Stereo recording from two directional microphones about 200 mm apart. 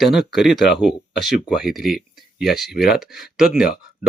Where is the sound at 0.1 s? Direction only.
Centre (ahead or behind).